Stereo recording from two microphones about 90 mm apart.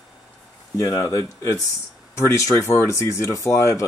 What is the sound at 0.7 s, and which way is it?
Speech, 35° left (ahead or behind).